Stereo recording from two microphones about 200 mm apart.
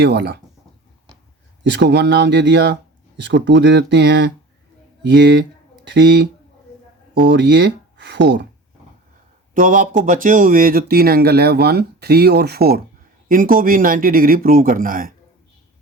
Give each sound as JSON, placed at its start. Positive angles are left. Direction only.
{"t": 0.0, "sound": "speech", "side_deg": -55}
{"t": 1.6, "sound": "speech", "side_deg": -60}
{"t": 9.6, "sound": "speech", "side_deg": -40}